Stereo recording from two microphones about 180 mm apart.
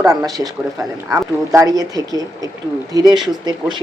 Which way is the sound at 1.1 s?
20° right (ahead or behind).